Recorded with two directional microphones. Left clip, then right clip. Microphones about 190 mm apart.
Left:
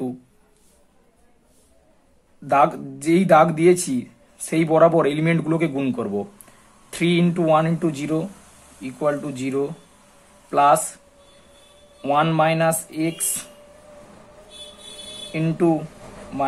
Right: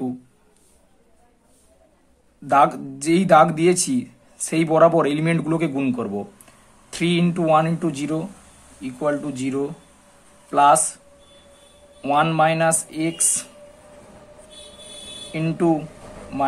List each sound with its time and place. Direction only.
2.4 s a man's voice: 10° left (ahead or behind)
12.0 s speech: 5° left (ahead or behind)
15.3 s speech: 5° left (ahead or behind)